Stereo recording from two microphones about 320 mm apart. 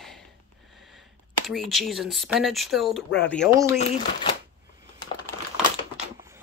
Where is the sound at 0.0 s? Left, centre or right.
Centre.